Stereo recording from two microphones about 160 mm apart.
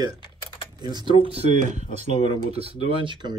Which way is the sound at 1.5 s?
50° right (ahead or behind).